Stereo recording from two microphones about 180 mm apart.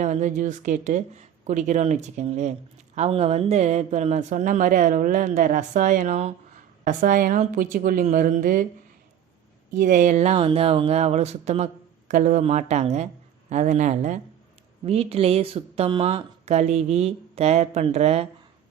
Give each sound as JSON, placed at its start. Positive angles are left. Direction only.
{"t": 0.0, "sound": "a woman's voice", "side_deg": -40}
{"t": 9.7, "sound": "speech", "side_deg": -45}